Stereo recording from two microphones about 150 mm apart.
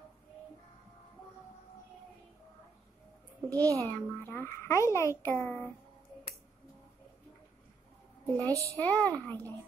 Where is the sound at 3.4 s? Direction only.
20° right (ahead or behind).